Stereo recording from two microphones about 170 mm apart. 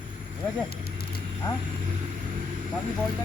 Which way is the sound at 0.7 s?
65° left (ahead or behind).